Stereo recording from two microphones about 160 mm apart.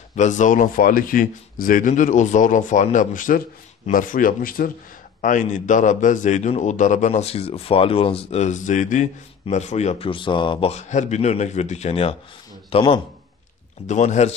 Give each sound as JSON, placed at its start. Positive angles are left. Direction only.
{"t": 0.1, "sound": "a man's voice", "side_deg": 50}
{"t": 5.2, "sound": "a man's voice", "side_deg": 50}
{"t": 13.8, "sound": "a man's voice", "side_deg": 45}